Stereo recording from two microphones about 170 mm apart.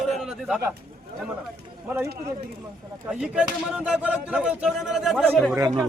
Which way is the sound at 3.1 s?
5° right (ahead or behind).